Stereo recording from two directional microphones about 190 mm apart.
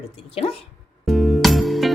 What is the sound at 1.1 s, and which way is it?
Music, centre (ahead or behind).